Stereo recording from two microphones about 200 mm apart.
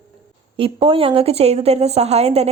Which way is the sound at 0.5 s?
25° right (ahead or behind).